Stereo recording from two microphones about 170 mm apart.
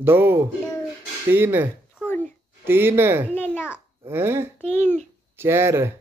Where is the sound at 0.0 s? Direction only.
15° right (ahead or behind).